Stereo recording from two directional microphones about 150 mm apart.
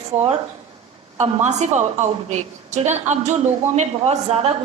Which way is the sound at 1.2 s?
50° right (ahead or behind).